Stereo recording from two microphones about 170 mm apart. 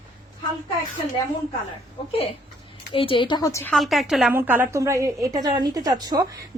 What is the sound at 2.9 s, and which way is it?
Speech, 30° left (ahead or behind).